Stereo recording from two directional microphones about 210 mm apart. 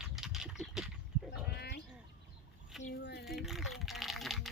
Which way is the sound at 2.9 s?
50° left (ahead or behind).